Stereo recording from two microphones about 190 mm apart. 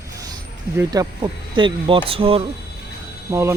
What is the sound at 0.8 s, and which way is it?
Speech, 20° right (ahead or behind).